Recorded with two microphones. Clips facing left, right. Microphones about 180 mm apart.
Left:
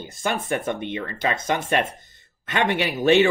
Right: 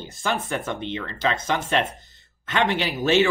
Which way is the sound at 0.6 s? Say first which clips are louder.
Left 2 dB; 50° left (ahead or behind).